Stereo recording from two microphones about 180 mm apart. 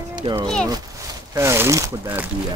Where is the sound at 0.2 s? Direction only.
30° right (ahead or behind).